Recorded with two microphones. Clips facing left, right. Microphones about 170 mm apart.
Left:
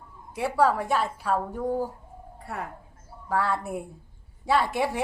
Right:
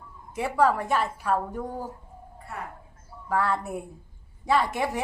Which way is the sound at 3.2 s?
Centre (ahead or behind).